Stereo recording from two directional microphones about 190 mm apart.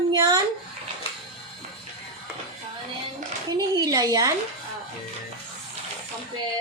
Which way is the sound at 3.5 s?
20° right (ahead or behind).